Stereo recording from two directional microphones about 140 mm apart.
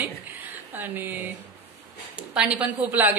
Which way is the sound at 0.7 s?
15° right (ahead or behind).